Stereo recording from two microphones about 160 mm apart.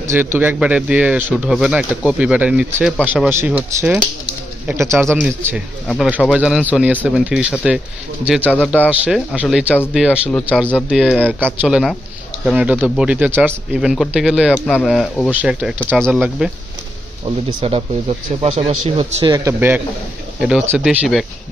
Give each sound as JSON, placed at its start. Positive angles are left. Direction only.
{"t": 0.0, "sound": "speech", "side_deg": -15}
{"t": 6.0, "sound": "speech", "side_deg": -5}
{"t": 17.6, "sound": "speech", "side_deg": -35}
{"t": 19.3, "sound": "speech", "side_deg": -15}